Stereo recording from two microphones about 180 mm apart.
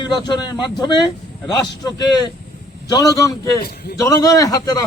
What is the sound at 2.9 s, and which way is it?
A man's voice, 20° left (ahead or behind).